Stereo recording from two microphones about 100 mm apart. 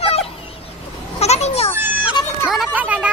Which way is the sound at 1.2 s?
90° left.